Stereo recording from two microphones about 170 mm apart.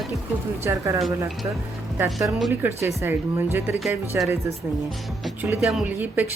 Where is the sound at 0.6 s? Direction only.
15° right (ahead or behind).